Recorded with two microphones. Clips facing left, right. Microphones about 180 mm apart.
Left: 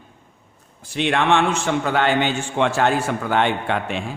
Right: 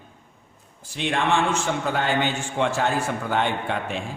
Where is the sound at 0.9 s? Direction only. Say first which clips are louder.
Left 4 dB; 70° left (ahead or behind).